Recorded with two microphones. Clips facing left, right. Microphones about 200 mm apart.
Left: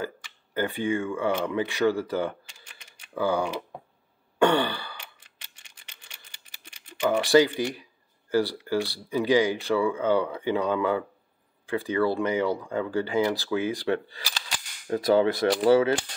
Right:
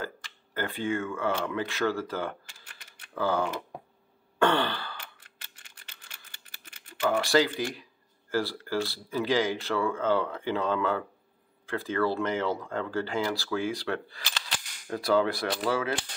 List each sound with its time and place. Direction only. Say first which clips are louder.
0.6 s speech: left 4 dB; 15° left (ahead or behind)
4.4 s a sound: left 3 dB; 15° left (ahead or behind)
8.3 s speech: left 5 dB; 15° left (ahead or behind)
14.9 s cap gun: left 4 dB; 20° left (ahead or behind)